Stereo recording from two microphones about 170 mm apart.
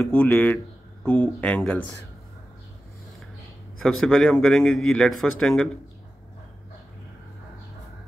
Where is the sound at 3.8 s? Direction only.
5° left (ahead or behind).